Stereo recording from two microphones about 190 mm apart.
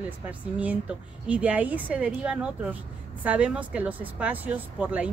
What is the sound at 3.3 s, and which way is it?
Speech, 5° right (ahead or behind).